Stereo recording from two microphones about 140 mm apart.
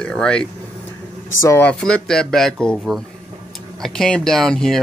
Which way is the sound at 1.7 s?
5° left (ahead or behind).